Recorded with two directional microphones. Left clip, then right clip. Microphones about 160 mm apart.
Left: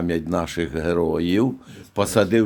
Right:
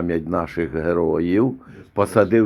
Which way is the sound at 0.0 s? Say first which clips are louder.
Right 1 dB; 20° left (ahead or behind).